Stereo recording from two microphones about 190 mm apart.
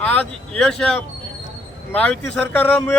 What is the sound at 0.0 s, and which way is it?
Speech, 5° left (ahead or behind).